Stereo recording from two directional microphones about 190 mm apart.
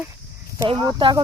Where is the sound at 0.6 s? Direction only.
25° right (ahead or behind).